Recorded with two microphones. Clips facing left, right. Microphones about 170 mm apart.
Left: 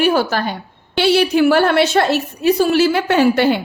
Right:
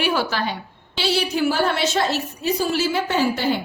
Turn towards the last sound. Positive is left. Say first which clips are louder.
# left 7 dB
turn(degrees=70)  # may be behind; listen again after turning